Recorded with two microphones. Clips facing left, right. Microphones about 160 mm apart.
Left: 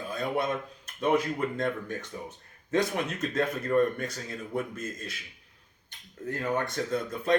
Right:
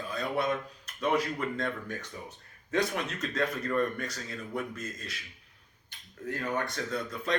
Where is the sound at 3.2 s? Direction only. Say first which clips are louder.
Left 1 dB; 25° left (ahead or behind).